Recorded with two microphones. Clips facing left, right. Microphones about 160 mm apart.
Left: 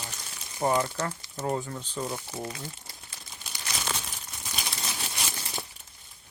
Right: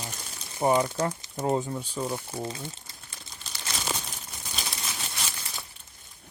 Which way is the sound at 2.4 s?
25° right (ahead or behind).